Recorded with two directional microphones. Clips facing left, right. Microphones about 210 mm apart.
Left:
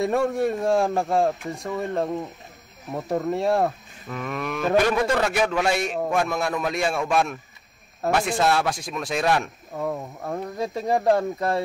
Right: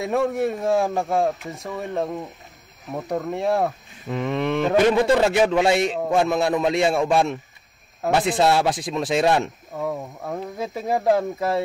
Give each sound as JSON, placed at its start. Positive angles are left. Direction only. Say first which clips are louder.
{"t": 0.0, "sound": "speech", "louder": "even", "side_deg": 0}
{"t": 4.1, "sound": "a man's voice", "louder": "right 6 dB", "side_deg": -25}
{"t": 9.8, "sound": "speech", "louder": "right 1 dB", "side_deg": 0}